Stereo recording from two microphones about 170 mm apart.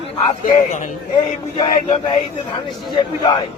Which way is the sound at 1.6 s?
30° left (ahead or behind).